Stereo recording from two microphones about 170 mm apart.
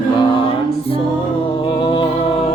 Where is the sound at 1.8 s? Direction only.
30° left (ahead or behind).